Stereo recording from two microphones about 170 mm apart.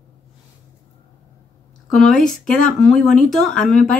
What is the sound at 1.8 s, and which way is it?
Speech, centre (ahead or behind).